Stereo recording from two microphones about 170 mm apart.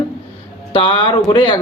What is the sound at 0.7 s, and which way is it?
Speech, 25° left (ahead or behind).